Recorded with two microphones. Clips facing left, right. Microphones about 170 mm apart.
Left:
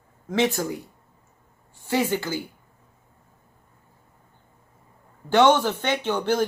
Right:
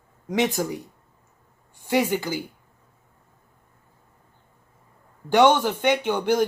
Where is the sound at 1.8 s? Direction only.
15° right (ahead or behind).